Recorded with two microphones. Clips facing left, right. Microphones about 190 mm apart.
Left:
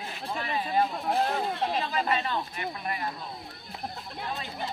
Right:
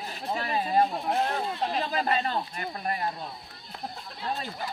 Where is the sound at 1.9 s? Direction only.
40° right (ahead or behind).